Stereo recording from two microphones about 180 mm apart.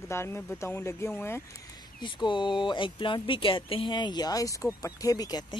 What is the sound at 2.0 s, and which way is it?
Speech, 25° left (ahead or behind).